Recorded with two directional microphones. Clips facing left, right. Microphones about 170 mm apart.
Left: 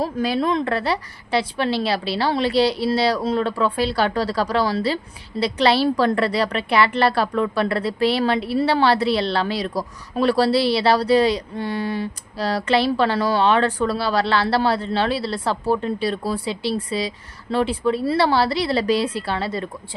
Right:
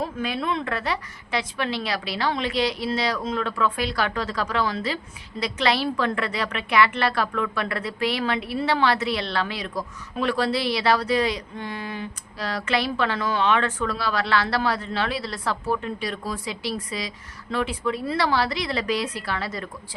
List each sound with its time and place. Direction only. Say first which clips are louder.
0.0 s a woman's voice: left 6 dB; 35° left (ahead or behind)